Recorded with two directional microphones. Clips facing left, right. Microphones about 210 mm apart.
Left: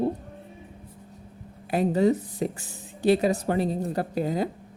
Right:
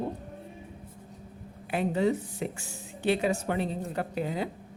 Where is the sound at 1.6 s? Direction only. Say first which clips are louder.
Left 5 dB; 40° left (ahead or behind).